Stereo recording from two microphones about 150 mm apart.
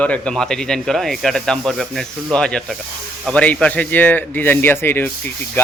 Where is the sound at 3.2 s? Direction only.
10° left (ahead or behind).